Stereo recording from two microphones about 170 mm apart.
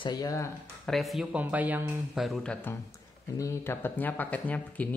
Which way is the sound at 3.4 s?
15° left (ahead or behind).